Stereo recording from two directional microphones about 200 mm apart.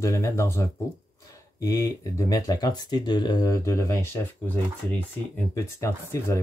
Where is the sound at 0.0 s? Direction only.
15° left (ahead or behind).